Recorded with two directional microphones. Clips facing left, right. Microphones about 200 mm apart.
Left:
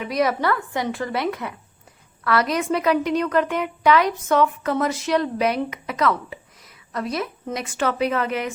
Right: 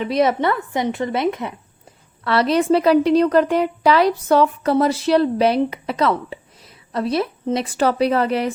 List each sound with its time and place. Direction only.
0.0 s a woman's voice: 25° right (ahead or behind)